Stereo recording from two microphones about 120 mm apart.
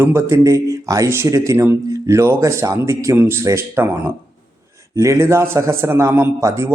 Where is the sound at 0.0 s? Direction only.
25° right (ahead or behind).